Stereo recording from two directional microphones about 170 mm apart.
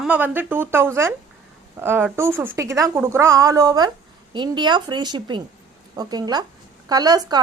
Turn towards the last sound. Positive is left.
turn(degrees=-25)  # may be behind; listen again after turning